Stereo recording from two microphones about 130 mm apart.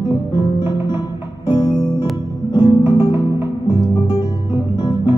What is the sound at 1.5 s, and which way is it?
Music, 40° left (ahead or behind).